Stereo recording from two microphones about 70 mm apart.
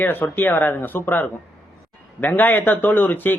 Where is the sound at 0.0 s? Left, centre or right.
Left.